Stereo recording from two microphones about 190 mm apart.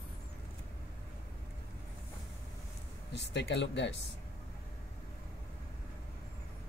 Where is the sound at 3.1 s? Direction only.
65° left (ahead or behind).